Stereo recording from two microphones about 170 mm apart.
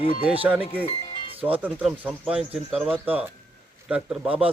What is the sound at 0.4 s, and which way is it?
Speech, 10° right (ahead or behind).